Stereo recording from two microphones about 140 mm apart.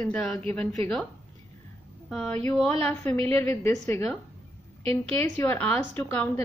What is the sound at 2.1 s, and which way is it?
A woman's voice, 5° left (ahead or behind).